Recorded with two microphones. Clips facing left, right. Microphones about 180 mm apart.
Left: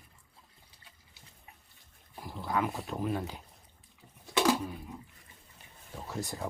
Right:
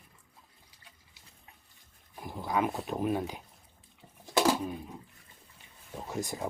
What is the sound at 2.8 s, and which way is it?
Speech, 20° right (ahead or behind).